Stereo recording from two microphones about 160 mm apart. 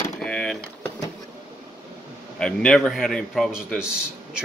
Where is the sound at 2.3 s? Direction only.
5° left (ahead or behind).